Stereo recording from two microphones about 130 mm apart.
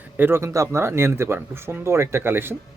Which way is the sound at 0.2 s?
20° right (ahead or behind).